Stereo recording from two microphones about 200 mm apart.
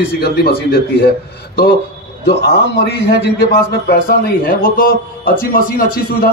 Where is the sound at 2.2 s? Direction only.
55° left (ahead or behind).